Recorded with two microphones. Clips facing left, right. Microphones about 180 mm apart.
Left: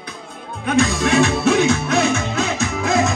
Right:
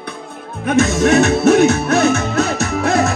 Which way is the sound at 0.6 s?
40° right (ahead or behind).